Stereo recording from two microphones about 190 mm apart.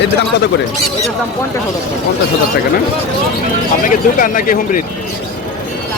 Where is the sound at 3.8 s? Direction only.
45° left (ahead or behind).